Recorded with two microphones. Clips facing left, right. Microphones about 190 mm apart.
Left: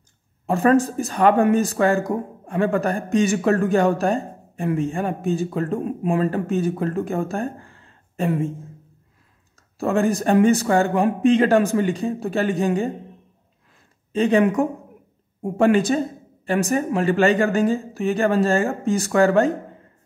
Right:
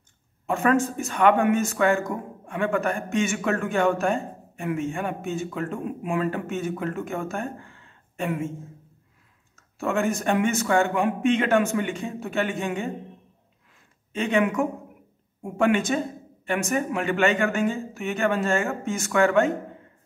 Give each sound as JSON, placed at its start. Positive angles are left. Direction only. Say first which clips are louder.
{"t": 0.5, "sound": "speech", "louder": "left 5 dB", "side_deg": 35}
{"t": 9.6, "sound": "speech", "louder": "left 5 dB", "side_deg": 35}
{"t": 14.1, "sound": "speech", "louder": "left 5 dB", "side_deg": 35}